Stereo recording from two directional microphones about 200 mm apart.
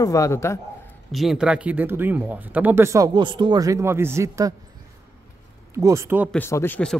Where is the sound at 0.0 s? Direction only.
15° left (ahead or behind).